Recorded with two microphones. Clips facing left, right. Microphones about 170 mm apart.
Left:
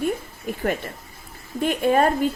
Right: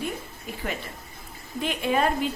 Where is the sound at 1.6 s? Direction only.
45° left (ahead or behind).